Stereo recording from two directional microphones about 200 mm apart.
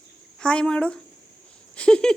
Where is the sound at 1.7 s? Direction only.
5° left (ahead or behind).